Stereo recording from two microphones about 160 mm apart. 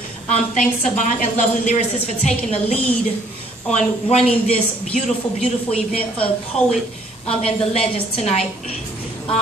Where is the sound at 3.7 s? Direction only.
45° left (ahead or behind).